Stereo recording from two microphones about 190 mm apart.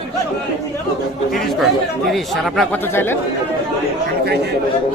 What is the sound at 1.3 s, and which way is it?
Speech, centre (ahead or behind).